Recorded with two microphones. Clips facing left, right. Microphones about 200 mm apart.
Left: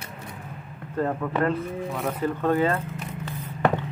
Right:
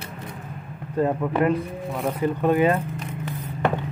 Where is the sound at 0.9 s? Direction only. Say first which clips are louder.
Right 3 dB; 15° right (ahead or behind).